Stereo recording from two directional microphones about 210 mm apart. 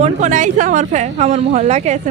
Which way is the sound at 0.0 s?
35° right (ahead or behind).